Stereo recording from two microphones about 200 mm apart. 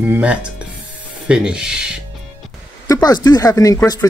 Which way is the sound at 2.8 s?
20° left (ahead or behind).